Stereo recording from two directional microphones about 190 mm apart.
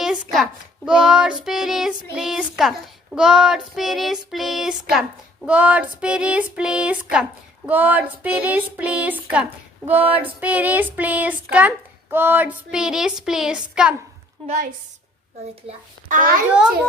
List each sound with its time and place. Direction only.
0.0 s a sound: centre (ahead or behind)
0.9 s child singing: 5° right (ahead or behind)
14.4 s a woman's voice: 40° right (ahead or behind)
16.5 s child singing: 5° right (ahead or behind)